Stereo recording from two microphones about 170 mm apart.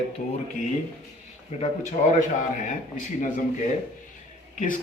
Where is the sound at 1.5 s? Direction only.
35° left (ahead or behind).